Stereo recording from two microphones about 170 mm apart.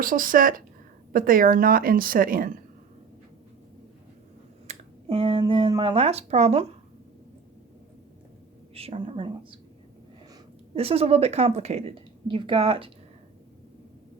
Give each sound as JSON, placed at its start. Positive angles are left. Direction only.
{"t": 0.0, "sound": "a woman's voice", "side_deg": -55}
{"t": 4.7, "sound": "speech", "side_deg": -35}
{"t": 8.7, "sound": "a woman's voice", "side_deg": -35}
{"t": 10.8, "sound": "a woman's voice", "side_deg": -35}